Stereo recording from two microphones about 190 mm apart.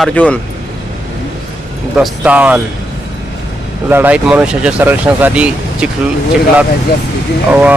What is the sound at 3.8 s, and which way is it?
Speech, 10° right (ahead or behind).